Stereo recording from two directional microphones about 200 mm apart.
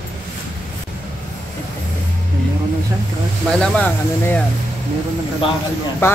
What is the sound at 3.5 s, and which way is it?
Speech, 5° left (ahead or behind).